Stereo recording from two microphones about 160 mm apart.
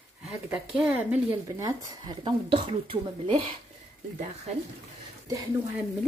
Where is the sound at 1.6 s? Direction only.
20° right (ahead or behind).